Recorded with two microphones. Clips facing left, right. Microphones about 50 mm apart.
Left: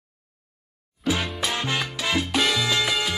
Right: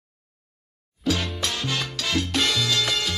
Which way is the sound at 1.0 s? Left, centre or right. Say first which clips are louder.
Left 1 dB; centre.